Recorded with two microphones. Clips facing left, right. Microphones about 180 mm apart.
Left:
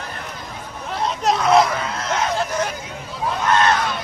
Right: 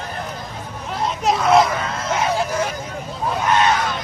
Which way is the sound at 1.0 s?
Centre (ahead or behind).